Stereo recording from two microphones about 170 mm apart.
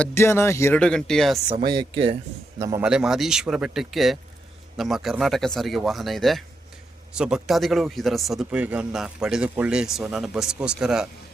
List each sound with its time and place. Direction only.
0.0 s speech: 15° left (ahead or behind)
2.6 s a man's voice: 20° right (ahead or behind)
2.8 s speech: 5° right (ahead or behind)